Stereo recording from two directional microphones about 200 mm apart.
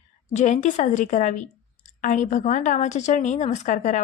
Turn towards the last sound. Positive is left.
turn(degrees=40)  # may be behind; listen again after turning